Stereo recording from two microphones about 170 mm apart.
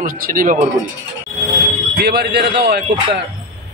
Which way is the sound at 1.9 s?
65° right (ahead or behind).